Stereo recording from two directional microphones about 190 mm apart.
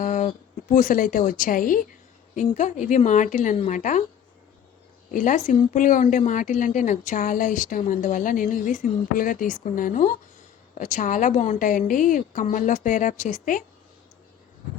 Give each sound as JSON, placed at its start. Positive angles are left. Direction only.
{"t": 0.0, "sound": "a sound", "side_deg": 40}
{"t": 0.7, "sound": "a woman's voice", "side_deg": 45}
{"t": 5.1, "sound": "a woman's voice", "side_deg": 40}